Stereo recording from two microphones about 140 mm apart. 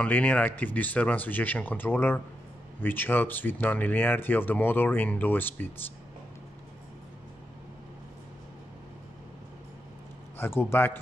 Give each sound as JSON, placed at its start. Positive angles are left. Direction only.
{"t": 0.0, "sound": "speech", "side_deg": 10}
{"t": 10.3, "sound": "speech", "side_deg": 15}